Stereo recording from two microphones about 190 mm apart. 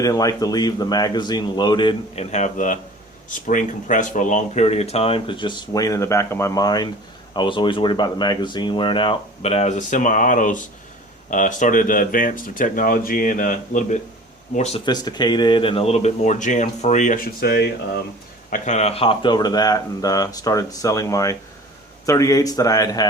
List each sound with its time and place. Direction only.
0.0 s speech: 20° left (ahead or behind); by 14.8 s 35° left (ahead or behind)
14.8 s speech: 20° left (ahead or behind); by 17.2 s 40° left (ahead or behind)
17.4 s speech: 55° left (ahead or behind)
18.5 s speech: 40° left (ahead or behind); by 23.0 s 20° left (ahead or behind)